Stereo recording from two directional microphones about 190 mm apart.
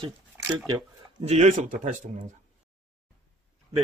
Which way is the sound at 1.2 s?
35° right (ahead or behind).